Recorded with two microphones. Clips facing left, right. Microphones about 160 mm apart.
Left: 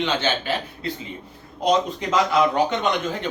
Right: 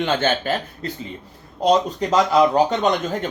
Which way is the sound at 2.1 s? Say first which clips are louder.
Right 4 dB; 40° right (ahead or behind).